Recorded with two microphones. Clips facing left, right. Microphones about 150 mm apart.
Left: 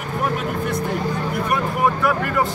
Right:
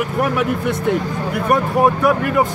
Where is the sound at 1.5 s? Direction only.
30° right (ahead or behind).